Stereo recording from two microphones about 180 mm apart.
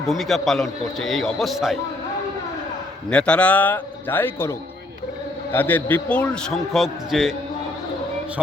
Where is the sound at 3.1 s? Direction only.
5° left (ahead or behind).